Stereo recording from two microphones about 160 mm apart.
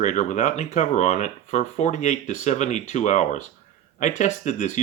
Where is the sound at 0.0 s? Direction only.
50° left (ahead or behind).